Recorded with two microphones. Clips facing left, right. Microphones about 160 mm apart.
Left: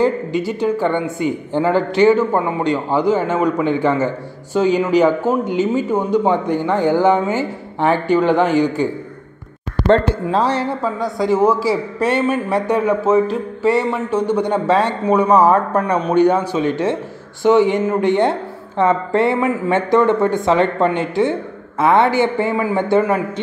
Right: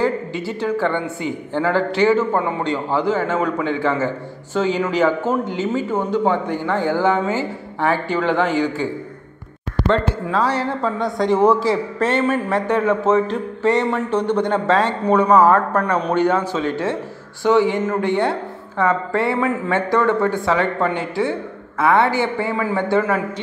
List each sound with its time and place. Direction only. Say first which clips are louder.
0.0 s a woman's voice: left 4 dB; 15° left (ahead or behind)
9.8 s speech: left 5 dB; 35° left (ahead or behind)
10.8 s speech: even; centre (ahead or behind); by 23.4 s 20° left (ahead or behind)